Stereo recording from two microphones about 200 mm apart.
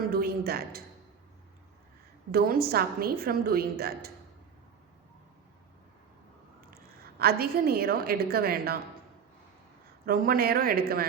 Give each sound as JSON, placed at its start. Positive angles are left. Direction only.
{"t": 0.1, "sound": "a woman's voice", "side_deg": -50}
{"t": 2.3, "sound": "a woman's voice", "side_deg": -50}
{"t": 7.2, "sound": "a woman's voice", "side_deg": -50}
{"t": 10.1, "sound": "a woman's voice", "side_deg": -45}